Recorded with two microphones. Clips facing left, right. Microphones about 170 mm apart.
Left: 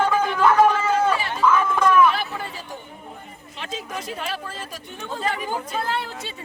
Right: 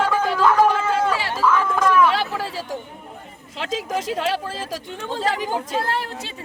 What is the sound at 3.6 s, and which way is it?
Speech, 90° right.